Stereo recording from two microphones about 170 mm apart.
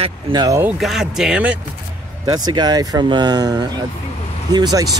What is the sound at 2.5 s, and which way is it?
Speech, 25° right (ahead or behind).